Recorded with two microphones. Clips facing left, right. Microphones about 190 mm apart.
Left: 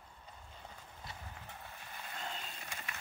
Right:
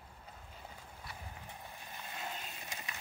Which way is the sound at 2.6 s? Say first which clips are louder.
Even; 20° right (ahead or behind).